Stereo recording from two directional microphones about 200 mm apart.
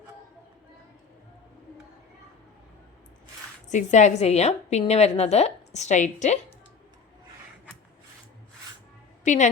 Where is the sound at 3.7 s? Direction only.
35° left (ahead or behind).